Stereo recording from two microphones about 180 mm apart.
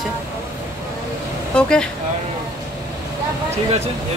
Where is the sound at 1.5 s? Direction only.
5° left (ahead or behind).